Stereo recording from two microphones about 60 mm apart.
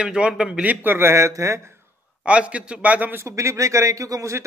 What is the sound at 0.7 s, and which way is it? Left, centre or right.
Speech, right.